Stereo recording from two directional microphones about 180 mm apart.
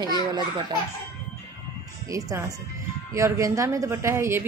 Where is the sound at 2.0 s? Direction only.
20° right (ahead or behind).